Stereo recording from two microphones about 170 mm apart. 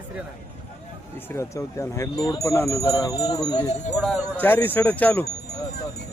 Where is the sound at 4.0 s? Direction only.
5° left (ahead or behind).